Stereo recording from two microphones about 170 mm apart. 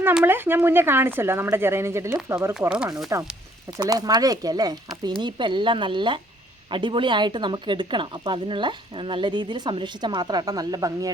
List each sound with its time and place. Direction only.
0.0 s speech: 10° right (ahead or behind)
2.6 s speech: 5° right (ahead or behind)
3.8 s speech: 20° right (ahead or behind)